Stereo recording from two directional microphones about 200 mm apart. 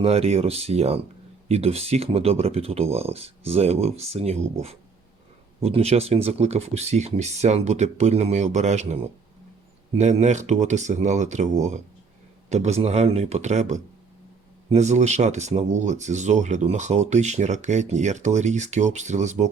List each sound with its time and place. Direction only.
0.0 s speech: 30° right (ahead or behind)
5.6 s speech: 30° right (ahead or behind)
10.0 s speech: 35° right (ahead or behind)